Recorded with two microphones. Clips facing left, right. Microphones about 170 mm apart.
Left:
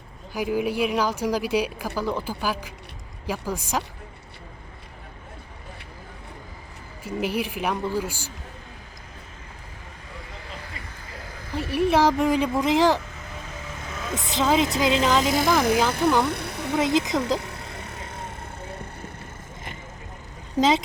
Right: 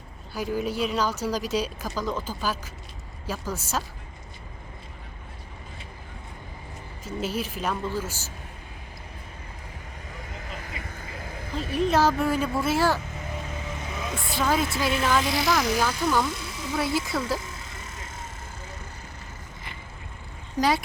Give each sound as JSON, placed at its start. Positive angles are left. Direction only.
{"t": 0.3, "sound": "speech", "side_deg": 10}
{"t": 7.0, "sound": "speech", "side_deg": 15}
{"t": 11.5, "sound": "speech", "side_deg": 10}
{"t": 14.2, "sound": "a woman's voice", "side_deg": 20}
{"t": 15.2, "sound": "speech", "side_deg": 45}
{"t": 15.9, "sound": "speech", "side_deg": 60}
{"t": 16.2, "sound": "electric shaver", "side_deg": 60}
{"t": 16.7, "sound": "speech", "side_deg": 20}
{"t": 17.4, "sound": "vehicle", "side_deg": 65}
{"t": 20.6, "sound": "a woman's voice", "side_deg": 20}